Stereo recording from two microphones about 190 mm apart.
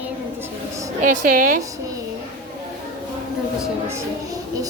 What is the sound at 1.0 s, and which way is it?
Speech, 45° right (ahead or behind).